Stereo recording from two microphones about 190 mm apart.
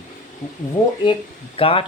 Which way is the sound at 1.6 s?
30° left (ahead or behind).